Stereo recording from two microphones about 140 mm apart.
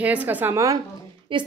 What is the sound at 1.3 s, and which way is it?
Speech, 35° right (ahead or behind).